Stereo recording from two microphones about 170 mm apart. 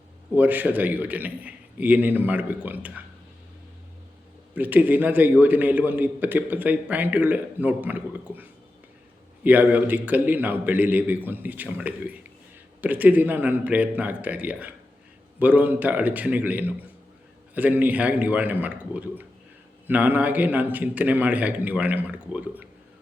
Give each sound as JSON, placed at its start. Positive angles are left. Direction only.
{"t": 0.3, "sound": "a man's voice", "side_deg": -10}
{"t": 4.5, "sound": "a man's voice", "side_deg": -10}